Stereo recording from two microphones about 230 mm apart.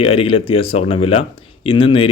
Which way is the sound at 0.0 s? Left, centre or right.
Left.